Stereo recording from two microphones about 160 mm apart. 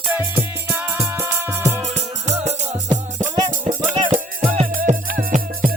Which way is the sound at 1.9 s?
45° right (ahead or behind).